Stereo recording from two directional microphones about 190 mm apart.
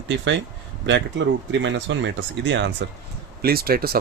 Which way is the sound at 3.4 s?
55° right (ahead or behind).